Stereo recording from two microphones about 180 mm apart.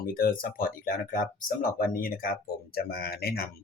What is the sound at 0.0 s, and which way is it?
Speech, 55° left (ahead or behind).